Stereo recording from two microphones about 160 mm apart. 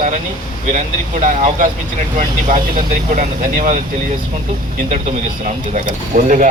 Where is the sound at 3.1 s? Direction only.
55° right (ahead or behind).